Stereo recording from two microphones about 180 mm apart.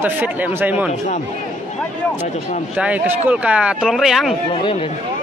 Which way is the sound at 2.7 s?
10° right (ahead or behind).